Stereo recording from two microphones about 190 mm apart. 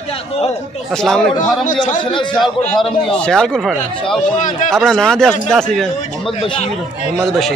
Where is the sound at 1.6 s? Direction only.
40° left (ahead or behind).